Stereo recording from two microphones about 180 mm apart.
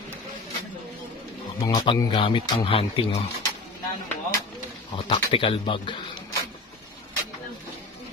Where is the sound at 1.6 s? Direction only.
30° left (ahead or behind).